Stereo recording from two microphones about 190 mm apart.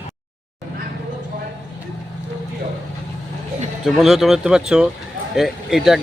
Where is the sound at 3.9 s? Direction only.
Centre (ahead or behind).